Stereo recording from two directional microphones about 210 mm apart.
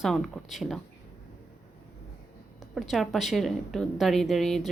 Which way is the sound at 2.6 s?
Centre (ahead or behind).